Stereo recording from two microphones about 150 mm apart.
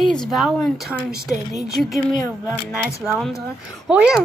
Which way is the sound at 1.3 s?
25° left (ahead or behind).